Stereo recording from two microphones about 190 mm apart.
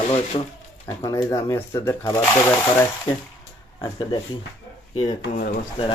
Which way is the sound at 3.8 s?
25° left (ahead or behind).